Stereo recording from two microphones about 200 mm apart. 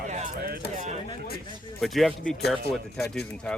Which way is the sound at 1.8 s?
Centre (ahead or behind).